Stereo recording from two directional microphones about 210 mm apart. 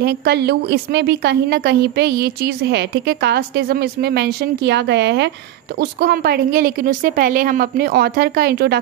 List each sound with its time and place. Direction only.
0.0 s a woman's voice: 50° right (ahead or behind)